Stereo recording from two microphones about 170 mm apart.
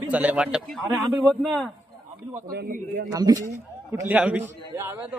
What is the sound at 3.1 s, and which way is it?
Speech, 20° right (ahead or behind).